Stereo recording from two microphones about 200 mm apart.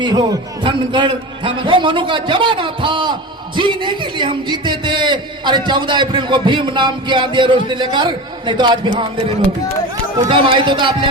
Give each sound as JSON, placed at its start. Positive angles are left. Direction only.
{"t": 0.0, "sound": "a man's voice", "side_deg": -20}
{"t": 10.2, "sound": "a man's voice", "side_deg": -25}